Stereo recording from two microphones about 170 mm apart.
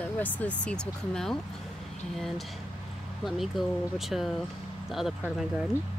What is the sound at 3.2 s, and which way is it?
A woman's voice, centre (ahead or behind).